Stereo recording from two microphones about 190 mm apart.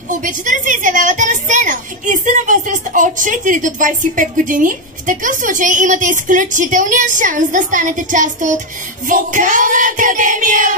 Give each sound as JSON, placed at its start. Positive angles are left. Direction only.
{"t": 0.1, "sound": "a woman's voice", "side_deg": -40}